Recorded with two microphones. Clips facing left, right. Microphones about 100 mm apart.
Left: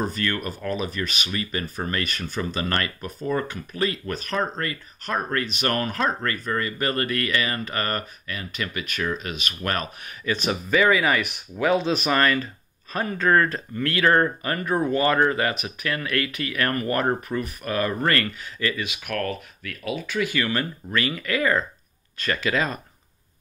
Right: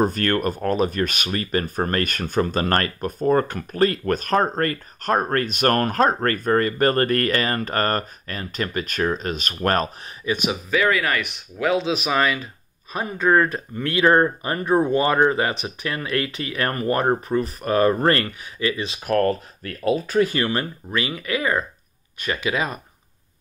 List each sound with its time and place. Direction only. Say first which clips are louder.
0.0 s speech: right 6 dB; 50° right (ahead or behind)
10.2 s speech: right 2 dB; 10° right (ahead or behind)
18.9 s speech: right 8 dB; 35° right (ahead or behind)
20.5 s speech: right 1 dB; 20° right (ahead or behind)